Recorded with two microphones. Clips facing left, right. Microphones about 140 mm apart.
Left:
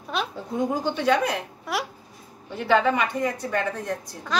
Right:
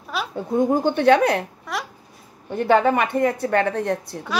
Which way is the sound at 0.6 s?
55° right (ahead or behind).